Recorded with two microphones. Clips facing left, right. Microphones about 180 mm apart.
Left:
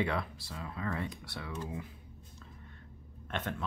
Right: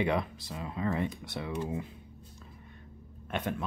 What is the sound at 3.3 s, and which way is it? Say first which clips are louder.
Speech: right 4 dB; 10° right (ahead or behind).